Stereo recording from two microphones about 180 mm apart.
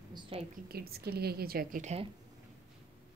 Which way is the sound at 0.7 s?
60° right (ahead or behind).